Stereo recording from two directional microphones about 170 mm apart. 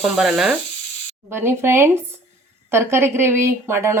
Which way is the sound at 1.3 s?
15° right (ahead or behind).